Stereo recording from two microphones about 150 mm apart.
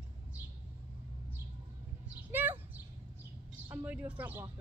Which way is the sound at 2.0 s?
15° right (ahead or behind).